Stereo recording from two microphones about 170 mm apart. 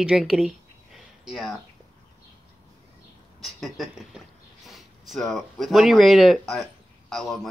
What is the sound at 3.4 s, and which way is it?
Speech, centre (ahead or behind).